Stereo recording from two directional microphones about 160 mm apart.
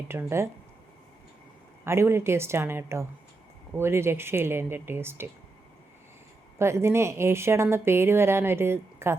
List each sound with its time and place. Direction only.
0.1 s speech: 15° right (ahead or behind)
1.8 s speech: 15° right (ahead or behind)
6.6 s speech: 15° right (ahead or behind)